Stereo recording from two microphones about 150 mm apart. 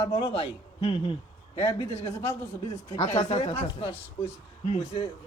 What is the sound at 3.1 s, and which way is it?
Speech, 45° left (ahead or behind).